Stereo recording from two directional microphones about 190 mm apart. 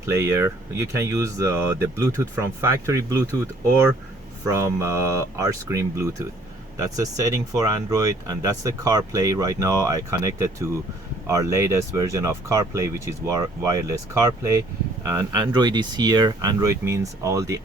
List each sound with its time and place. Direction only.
0.0 s speech: 15° right (ahead or behind)